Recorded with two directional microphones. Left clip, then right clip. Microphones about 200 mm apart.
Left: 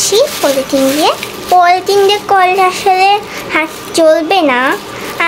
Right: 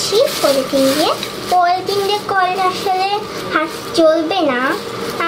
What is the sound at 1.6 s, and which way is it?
A child's voice, 50° left (ahead or behind).